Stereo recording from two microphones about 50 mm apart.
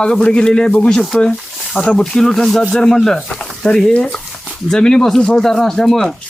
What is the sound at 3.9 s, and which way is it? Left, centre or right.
Speech, left.